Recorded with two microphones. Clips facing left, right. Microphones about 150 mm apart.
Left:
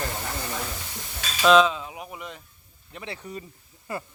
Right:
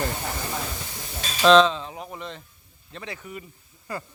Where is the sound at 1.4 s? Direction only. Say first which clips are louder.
Right 2 dB; 10° left (ahead or behind).